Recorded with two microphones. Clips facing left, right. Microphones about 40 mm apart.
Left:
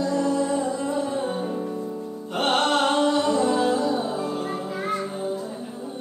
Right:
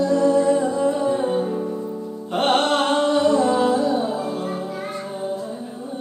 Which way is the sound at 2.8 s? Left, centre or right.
Right.